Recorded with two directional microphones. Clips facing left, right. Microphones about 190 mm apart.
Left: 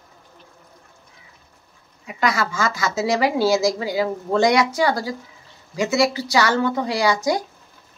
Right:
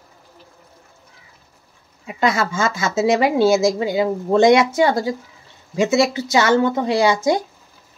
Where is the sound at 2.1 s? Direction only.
25° right (ahead or behind).